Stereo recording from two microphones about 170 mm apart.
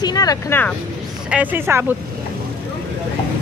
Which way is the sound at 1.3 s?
10° right (ahead or behind).